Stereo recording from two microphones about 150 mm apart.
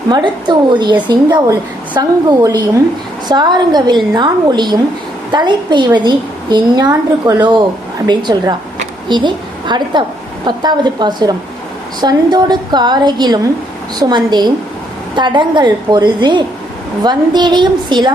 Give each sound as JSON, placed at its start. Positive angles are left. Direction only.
{"t": 0.1, "sound": "a woman's voice", "side_deg": -30}